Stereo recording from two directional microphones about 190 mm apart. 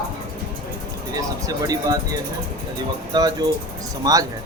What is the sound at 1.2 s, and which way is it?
Speech, 20° right (ahead or behind).